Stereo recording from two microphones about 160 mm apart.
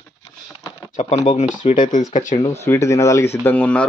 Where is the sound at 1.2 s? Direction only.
50° left (ahead or behind).